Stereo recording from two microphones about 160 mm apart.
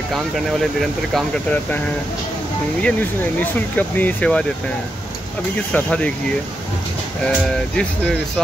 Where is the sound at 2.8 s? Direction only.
10° left (ahead or behind).